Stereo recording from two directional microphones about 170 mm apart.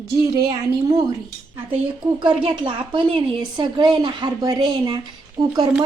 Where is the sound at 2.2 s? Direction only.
30° right (ahead or behind).